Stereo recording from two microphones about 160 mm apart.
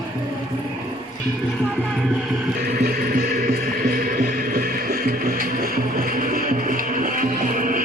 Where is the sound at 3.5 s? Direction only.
60° right (ahead or behind).